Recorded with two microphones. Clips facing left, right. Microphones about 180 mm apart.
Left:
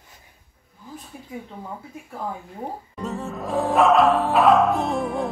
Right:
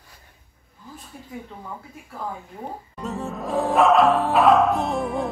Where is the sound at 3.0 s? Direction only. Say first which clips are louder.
Even; centre (ahead or behind).